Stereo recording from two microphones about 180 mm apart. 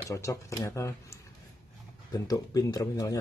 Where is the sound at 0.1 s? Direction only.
15° left (ahead or behind).